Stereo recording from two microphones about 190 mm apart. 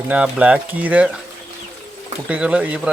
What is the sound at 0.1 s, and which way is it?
Speech, 5° right (ahead or behind).